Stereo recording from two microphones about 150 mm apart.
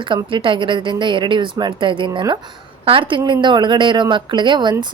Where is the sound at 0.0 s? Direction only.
35° right (ahead or behind).